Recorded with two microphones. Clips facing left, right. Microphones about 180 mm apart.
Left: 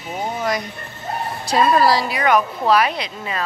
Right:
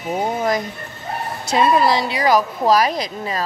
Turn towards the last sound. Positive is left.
turn(degrees=-40)  # may be behind; listen again after turning